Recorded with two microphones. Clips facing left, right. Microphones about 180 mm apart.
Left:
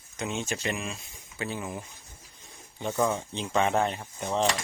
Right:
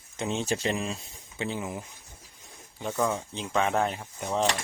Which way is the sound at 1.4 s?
20° right (ahead or behind).